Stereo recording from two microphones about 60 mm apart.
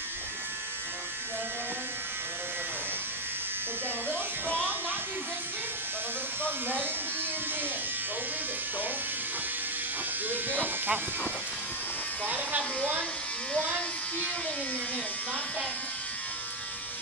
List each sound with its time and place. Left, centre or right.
10.3 s electric shaver: right
13.5 s electric shaver: centre